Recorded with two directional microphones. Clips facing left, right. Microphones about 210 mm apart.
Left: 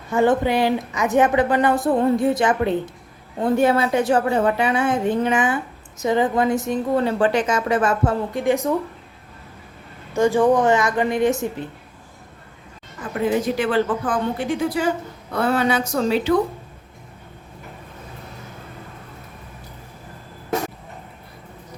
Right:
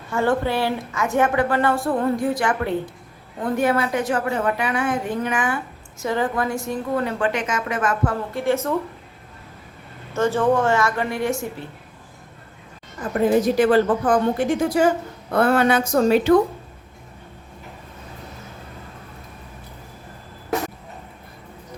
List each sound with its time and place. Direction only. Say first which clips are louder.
0.1 s a woman's voice: left 3 dB; 20° left (ahead or behind)
10.2 s a woman's voice: left 3 dB; 15° left (ahead or behind)
13.6 s speech: right 4 dB; 40° right (ahead or behind)